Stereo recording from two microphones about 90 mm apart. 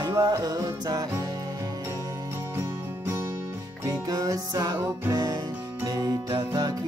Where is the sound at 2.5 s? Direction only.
25° right (ahead or behind).